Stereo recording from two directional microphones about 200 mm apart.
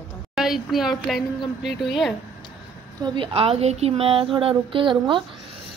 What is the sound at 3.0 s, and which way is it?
Speech, 25° right (ahead or behind).